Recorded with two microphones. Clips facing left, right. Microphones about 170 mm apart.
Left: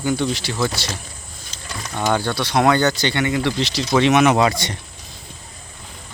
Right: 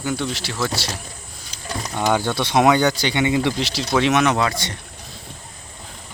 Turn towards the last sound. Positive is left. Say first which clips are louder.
# left 4 dB
turn(degrees=15)  # may be behind; listen again after turning